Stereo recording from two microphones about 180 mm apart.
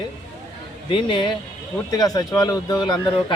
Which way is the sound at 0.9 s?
25° left (ahead or behind).